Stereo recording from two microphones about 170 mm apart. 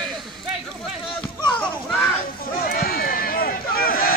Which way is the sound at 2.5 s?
60° left (ahead or behind).